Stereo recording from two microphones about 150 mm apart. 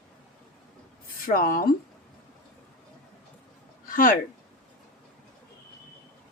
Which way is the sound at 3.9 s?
70° left (ahead or behind).